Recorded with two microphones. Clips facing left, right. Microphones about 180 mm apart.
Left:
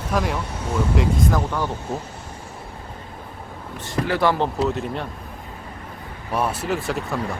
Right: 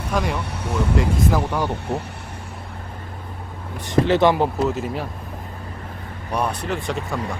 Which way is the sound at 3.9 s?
25° right (ahead or behind).